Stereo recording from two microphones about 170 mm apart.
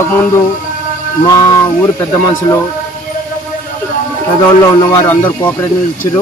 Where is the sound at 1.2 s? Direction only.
20° left (ahead or behind).